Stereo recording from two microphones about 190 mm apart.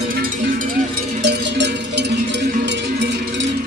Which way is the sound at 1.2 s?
60° right (ahead or behind).